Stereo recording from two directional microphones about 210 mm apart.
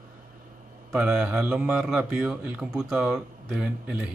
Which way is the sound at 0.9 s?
5° right (ahead or behind).